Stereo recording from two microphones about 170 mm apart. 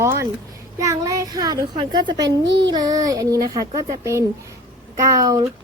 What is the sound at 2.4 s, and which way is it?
Child singing, 90° right.